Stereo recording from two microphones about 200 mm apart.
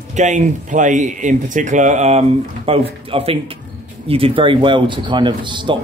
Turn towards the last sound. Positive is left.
turn(degrees=-25)  # may be behind; listen again after turning